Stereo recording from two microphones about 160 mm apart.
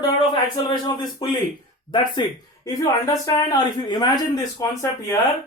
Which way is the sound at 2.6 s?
20° left (ahead or behind).